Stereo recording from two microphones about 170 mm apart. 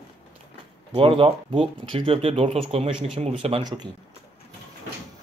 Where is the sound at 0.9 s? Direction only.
30° right (ahead or behind).